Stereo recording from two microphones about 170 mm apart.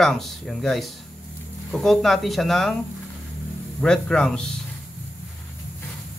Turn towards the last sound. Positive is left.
turn(degrees=5)  # may be behind; listen again after turning